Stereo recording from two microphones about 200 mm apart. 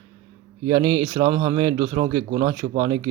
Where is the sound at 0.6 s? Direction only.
20° right (ahead or behind).